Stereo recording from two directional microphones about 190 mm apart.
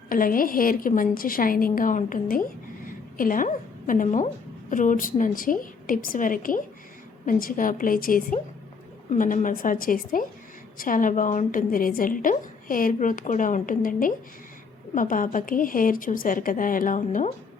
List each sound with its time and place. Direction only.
0.1 s a woman's voice: 45° left (ahead or behind)